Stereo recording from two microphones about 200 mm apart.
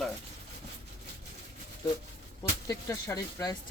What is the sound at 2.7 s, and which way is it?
Speech, 15° left (ahead or behind).